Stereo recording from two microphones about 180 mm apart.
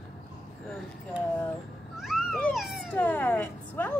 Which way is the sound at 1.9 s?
Centre (ahead or behind).